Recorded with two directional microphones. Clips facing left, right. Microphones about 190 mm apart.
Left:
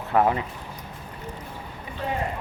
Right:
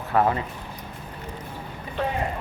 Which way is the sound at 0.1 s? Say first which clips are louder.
Left 1 dB; 20° left (ahead or behind).